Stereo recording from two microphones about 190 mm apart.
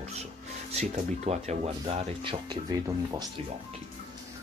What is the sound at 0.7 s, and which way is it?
Speech, 35° right (ahead or behind).